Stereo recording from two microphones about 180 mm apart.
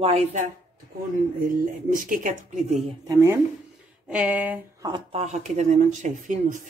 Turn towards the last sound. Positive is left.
turn(degrees=-45)  # may be behind; listen again after turning